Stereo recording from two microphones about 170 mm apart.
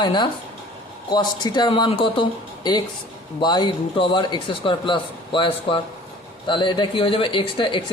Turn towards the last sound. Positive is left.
turn(degrees=30)  # may be behind; listen again after turning